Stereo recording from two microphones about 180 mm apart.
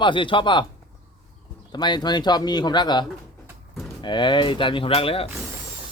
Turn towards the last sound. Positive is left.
turn(degrees=30)  # may be behind; listen again after turning